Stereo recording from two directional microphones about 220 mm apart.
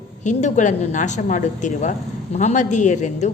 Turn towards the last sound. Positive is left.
turn(degrees=30)  # may be behind; listen again after turning